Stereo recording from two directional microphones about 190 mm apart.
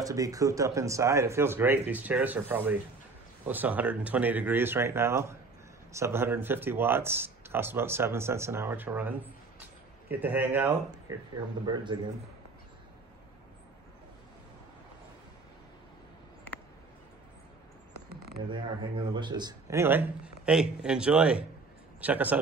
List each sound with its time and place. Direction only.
0.0 s speech: 20° right (ahead or behind)
11.6 s speech: 25° right (ahead or behind)
18.5 s speech: 25° right (ahead or behind); by 22.4 s 10° right (ahead or behind)